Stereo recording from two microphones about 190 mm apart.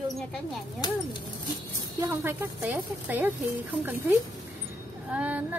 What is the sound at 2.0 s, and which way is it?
Speech, 10° right (ahead or behind).